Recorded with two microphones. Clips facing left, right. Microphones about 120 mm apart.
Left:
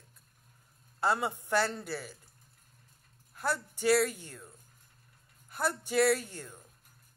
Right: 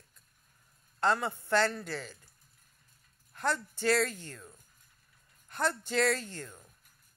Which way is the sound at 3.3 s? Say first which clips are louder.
Right 1 dB; 10° left (ahead or behind).